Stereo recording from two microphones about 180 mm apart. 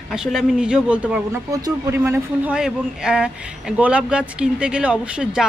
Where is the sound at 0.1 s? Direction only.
Centre (ahead or behind).